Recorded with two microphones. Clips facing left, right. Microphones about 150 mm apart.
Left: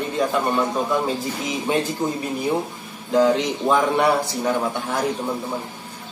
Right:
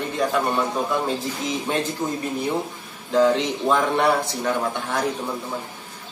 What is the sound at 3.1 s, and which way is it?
A man's voice, 5° left (ahead or behind).